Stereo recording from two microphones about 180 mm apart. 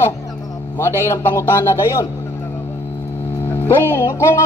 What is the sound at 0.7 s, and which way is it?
Music, 15° left (ahead or behind).